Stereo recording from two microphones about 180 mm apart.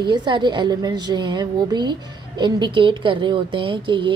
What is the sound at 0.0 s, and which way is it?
A woman's voice, 25° right (ahead or behind).